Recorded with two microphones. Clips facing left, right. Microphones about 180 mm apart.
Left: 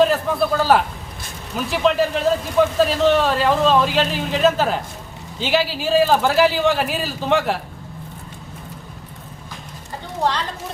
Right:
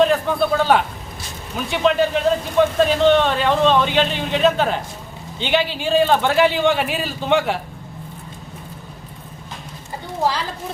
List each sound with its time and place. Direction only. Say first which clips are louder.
0.0 s a man's voice: even; centre (ahead or behind)